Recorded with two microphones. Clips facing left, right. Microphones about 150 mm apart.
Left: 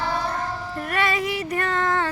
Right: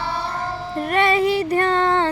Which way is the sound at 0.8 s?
25° right (ahead or behind).